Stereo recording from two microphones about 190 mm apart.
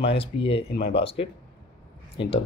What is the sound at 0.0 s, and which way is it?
Speech, 30° left (ahead or behind).